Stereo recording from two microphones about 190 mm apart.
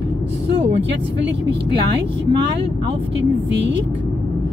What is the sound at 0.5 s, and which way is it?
Speech, 65° right (ahead or behind).